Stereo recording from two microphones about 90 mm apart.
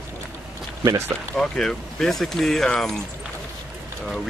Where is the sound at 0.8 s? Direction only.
30° right (ahead or behind).